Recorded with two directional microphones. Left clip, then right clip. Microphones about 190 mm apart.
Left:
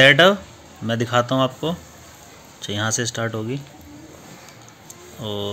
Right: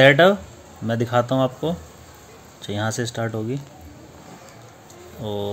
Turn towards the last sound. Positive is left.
turn(degrees=-5)  # may be behind; listen again after turning